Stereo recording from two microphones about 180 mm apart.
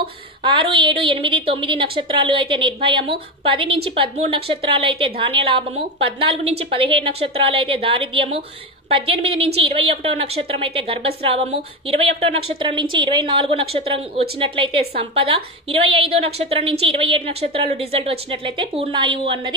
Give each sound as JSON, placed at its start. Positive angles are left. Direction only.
{"t": 0.4, "sound": "a woman's voice", "side_deg": -25}